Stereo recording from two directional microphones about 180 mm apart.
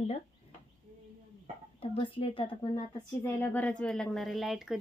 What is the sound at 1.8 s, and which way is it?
Speech, 30° left (ahead or behind).